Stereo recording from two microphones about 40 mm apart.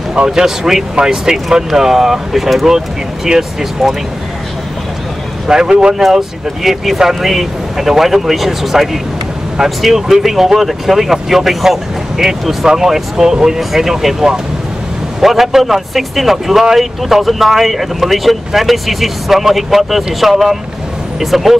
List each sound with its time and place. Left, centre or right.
0.1 s speech: centre
3.8 s speech: centre
5.5 s speech: centre
6.0 s speech: centre